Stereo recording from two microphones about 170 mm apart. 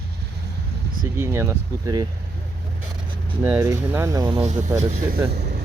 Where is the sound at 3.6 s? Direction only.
20° right (ahead or behind).